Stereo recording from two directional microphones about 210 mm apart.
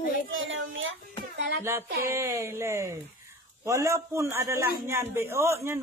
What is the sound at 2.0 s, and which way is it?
Speech, 15° right (ahead or behind).